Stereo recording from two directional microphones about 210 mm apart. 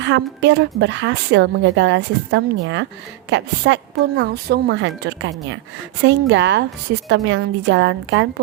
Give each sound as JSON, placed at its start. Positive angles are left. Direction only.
{"t": 0.0, "sound": "speech", "side_deg": -60}